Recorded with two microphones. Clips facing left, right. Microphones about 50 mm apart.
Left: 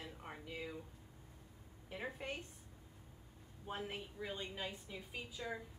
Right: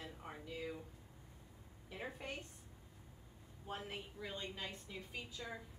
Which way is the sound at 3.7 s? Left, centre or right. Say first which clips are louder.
Left 2 dB; left.